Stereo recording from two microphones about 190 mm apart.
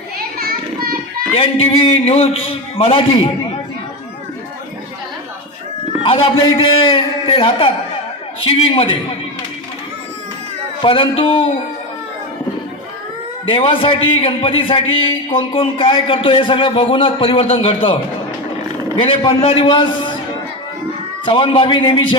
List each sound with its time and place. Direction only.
0.2 s a sound: 55° right (ahead or behind)
1.3 s a man's voice: 30° left (ahead or behind)
6.0 s a man's voice: 30° left (ahead or behind)
10.8 s a man's voice: 25° left (ahead or behind)
13.4 s a man's voice: 25° left (ahead or behind)
21.2 s a man's voice: 25° left (ahead or behind)